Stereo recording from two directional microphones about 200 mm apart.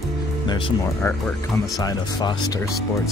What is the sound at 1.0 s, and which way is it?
Speech, 15° left (ahead or behind).